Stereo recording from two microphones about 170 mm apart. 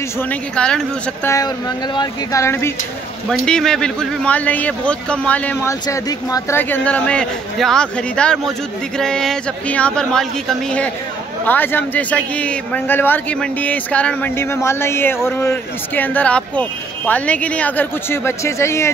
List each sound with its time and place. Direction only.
0.3 s a man's voice: 5° left (ahead or behind)
2.0 s a man's voice: 20° left (ahead or behind)
3.3 s a man's voice: 5° left (ahead or behind)
11.4 s a man's voice: 10° left (ahead or behind)